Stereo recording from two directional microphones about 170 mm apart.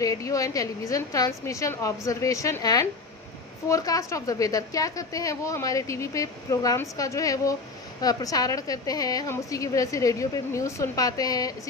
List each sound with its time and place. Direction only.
0.0 s a woman's voice: 20° left (ahead or behind)